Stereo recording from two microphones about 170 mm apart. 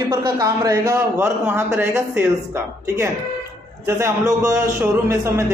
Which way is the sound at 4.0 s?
15° right (ahead or behind).